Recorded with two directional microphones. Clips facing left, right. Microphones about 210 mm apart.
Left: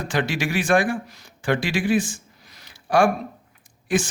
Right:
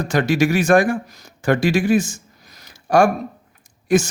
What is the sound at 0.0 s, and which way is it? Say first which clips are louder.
A man's voice: right 7 dB; 45° right (ahead or behind).